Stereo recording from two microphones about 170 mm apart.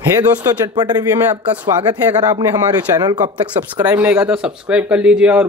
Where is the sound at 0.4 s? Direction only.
25° right (ahead or behind).